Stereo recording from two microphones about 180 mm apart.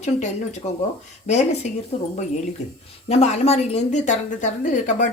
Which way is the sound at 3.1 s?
35° left (ahead or behind).